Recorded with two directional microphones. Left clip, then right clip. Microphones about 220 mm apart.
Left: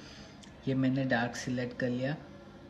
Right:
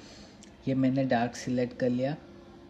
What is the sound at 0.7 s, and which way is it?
Speech, 25° right (ahead or behind).